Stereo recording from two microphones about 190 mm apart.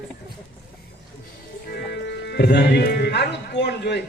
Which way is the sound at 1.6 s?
60° left (ahead or behind).